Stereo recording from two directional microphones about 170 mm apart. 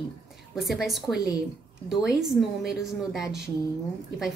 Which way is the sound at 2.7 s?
Centre (ahead or behind).